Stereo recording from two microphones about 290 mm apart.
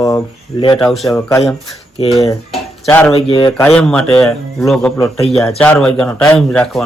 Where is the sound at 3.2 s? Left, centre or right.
Centre.